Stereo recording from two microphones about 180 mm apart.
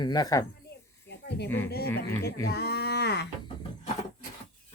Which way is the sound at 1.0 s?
70° left (ahead or behind).